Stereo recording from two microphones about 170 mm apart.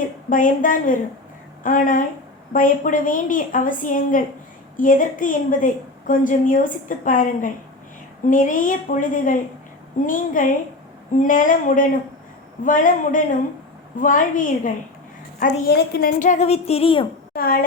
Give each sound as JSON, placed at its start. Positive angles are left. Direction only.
{"t": 0.3, "sound": "a woman's voice", "side_deg": 50}
{"t": 15.7, "sound": "a woman's voice", "side_deg": 70}
{"t": 17.3, "sound": "speech", "side_deg": 60}